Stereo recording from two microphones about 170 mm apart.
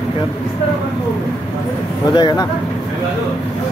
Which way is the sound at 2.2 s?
25° left (ahead or behind).